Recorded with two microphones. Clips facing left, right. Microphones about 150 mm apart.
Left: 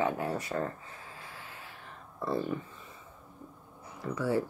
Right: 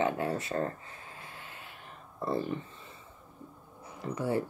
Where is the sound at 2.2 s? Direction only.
25° right (ahead or behind).